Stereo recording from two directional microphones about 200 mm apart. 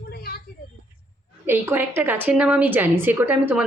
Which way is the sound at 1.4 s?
10° right (ahead or behind).